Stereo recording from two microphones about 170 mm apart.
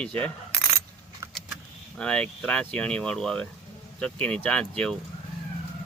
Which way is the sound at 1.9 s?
5° left (ahead or behind).